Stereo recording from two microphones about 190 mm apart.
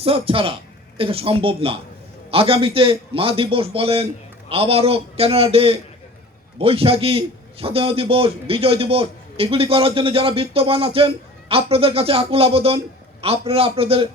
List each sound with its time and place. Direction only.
0.0 s a man's voice: 30° right (ahead or behind)